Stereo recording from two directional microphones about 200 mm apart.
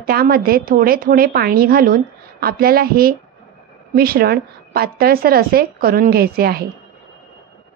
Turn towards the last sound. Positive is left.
turn(degrees=-50)  # may be behind; listen again after turning